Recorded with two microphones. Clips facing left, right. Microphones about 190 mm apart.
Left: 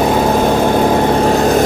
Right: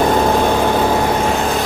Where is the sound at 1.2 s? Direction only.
40° left (ahead or behind).